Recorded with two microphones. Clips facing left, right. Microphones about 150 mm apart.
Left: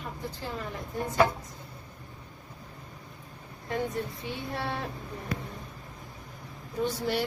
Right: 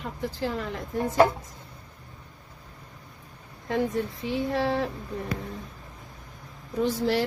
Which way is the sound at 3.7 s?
90° right.